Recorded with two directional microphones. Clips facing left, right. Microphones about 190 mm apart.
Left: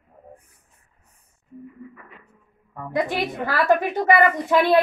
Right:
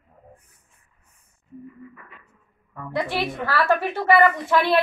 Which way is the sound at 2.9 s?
15° left (ahead or behind).